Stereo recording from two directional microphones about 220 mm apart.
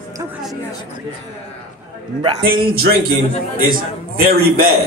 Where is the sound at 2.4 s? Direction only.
40° right (ahead or behind).